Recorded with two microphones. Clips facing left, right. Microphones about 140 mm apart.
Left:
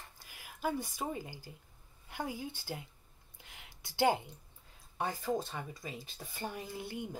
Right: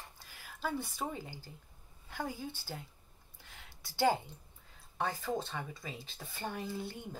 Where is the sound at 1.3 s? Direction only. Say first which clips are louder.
Even; 10° left (ahead or behind).